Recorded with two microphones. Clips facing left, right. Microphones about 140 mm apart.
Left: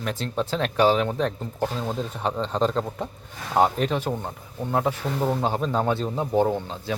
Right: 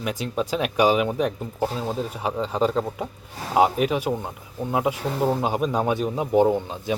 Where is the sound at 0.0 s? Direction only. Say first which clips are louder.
Right 1 dB; 10° right (ahead or behind).